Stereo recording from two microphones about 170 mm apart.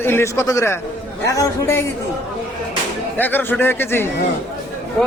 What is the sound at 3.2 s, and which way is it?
Speech, 10° left (ahead or behind).